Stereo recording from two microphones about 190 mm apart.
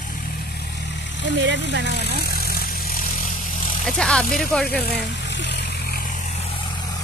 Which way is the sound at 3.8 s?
5° left (ahead or behind).